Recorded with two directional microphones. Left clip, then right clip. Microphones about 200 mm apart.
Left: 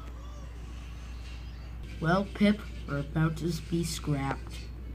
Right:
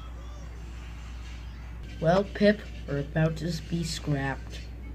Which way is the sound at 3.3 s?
20° left (ahead or behind).